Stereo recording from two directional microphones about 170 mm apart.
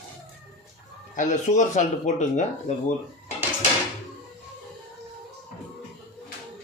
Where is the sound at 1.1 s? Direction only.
45° left (ahead or behind).